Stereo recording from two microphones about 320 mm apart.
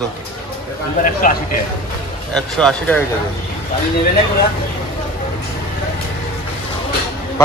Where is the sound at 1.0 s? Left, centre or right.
Left.